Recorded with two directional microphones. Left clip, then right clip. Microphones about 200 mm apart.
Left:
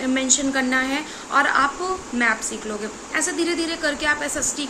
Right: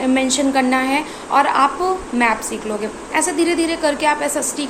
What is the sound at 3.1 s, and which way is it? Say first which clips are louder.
A woman's voice: right 5 dB; 15° left (ahead or behind).